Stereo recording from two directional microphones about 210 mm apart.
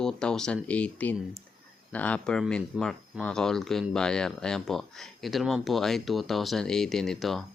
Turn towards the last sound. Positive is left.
turn(degrees=0)  # may be behind; listen again after turning